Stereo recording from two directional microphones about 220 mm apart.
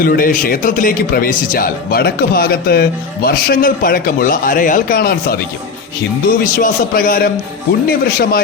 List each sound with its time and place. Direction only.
0.0 s speech: 40° left (ahead or behind)
6.6 s speech: 40° left (ahead or behind)